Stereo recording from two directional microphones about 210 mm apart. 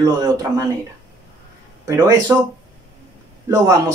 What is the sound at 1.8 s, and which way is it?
Speech, 15° right (ahead or behind).